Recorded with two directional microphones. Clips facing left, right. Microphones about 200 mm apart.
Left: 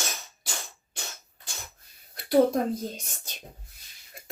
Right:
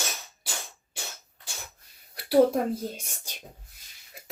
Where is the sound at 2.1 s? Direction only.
10° right (ahead or behind).